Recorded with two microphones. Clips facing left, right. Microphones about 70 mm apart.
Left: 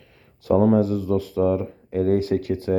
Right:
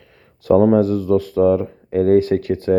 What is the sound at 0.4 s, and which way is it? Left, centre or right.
Speech, right.